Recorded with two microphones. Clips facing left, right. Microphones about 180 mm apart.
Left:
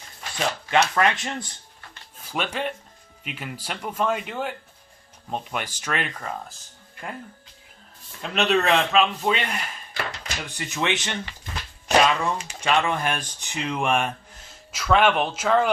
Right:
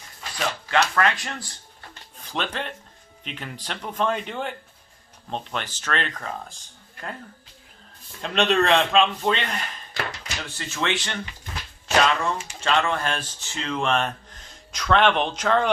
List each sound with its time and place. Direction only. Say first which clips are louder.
0.3 s speech: left 1 dB; 20° left (ahead or behind)
2.3 s speech: left 2 dB; 10° left (ahead or behind)
8.2 s speech: right 1 dB; 5° left (ahead or behind)